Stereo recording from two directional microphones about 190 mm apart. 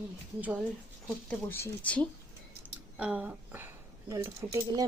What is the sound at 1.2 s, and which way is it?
Speech, 10° left (ahead or behind).